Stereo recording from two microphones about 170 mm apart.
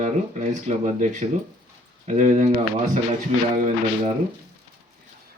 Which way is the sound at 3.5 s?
50° right (ahead or behind).